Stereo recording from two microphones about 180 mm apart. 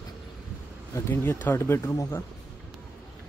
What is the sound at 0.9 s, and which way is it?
Speech, 15° left (ahead or behind).